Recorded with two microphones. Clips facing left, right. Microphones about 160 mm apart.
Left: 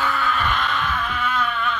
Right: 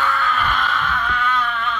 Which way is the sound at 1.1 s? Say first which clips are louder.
Right 2 dB; 5° left (ahead or behind).